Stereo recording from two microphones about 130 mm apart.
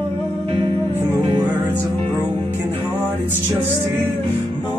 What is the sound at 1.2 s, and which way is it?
Music, 35° right (ahead or behind).